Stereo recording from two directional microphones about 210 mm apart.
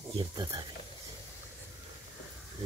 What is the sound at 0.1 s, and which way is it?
Speech, 20° right (ahead or behind).